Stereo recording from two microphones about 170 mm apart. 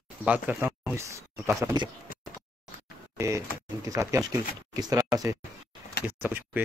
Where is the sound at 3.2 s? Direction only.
15° right (ahead or behind).